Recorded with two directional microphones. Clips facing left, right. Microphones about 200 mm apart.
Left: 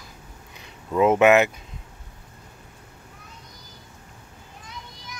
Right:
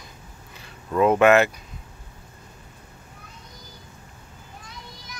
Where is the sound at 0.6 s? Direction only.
20° left (ahead or behind).